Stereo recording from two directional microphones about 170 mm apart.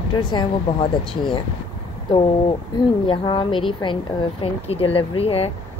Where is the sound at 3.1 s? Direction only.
30° left (ahead or behind).